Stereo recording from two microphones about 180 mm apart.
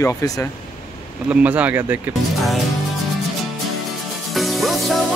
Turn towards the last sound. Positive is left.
turn(degrees=0)  # may be behind; listen again after turning